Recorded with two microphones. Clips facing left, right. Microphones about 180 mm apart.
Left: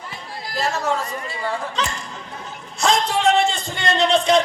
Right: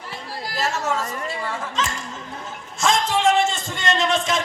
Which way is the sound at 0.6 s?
45° right (ahead or behind).